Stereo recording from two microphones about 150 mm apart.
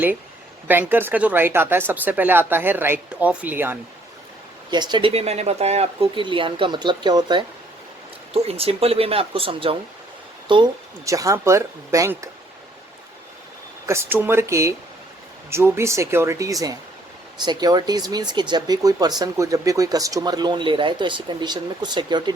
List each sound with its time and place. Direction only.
0.7 s speech: 15° right (ahead or behind)
4.7 s speech: 30° right (ahead or behind)
8.3 s speech: 40° right (ahead or behind)
11.0 s speech: 20° right (ahead or behind)
13.8 s speech: 15° right (ahead or behind)